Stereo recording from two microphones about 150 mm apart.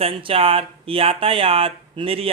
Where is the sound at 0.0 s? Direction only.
40° right (ahead or behind).